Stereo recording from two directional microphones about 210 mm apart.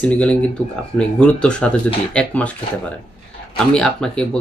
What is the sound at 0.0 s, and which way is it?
Speech, 5° left (ahead or behind).